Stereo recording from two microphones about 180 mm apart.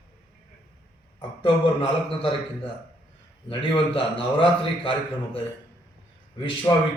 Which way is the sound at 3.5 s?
30° left (ahead or behind).